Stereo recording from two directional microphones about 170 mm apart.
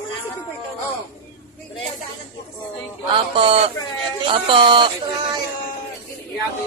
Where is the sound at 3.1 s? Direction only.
30° right (ahead or behind).